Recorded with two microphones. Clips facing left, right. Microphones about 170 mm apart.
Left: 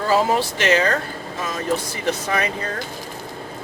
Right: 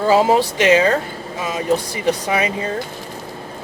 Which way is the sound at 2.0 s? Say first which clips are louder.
Right 4 dB; 15° right (ahead or behind).